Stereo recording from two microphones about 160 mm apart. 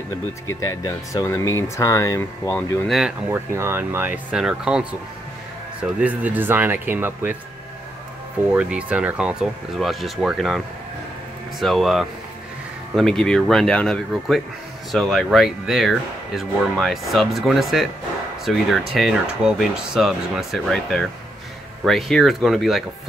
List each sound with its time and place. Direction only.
0.5 s speech: 20° left (ahead or behind)
2.9 s speech: 5° right (ahead or behind)
3.3 s speech: 15° right (ahead or behind)
8.5 s speech: 5° right (ahead or behind)
11.6 s speech: centre (ahead or behind)